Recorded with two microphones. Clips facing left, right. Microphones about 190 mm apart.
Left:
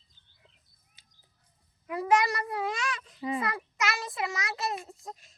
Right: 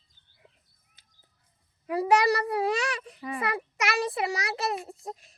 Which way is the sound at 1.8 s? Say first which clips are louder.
Right 3 dB; 30° right (ahead or behind).